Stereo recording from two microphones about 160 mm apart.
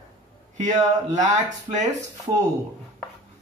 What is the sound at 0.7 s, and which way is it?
Speech, 50° right (ahead or behind).